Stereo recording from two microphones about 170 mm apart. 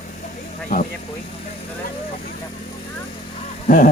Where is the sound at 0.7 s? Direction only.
65° left (ahead or behind).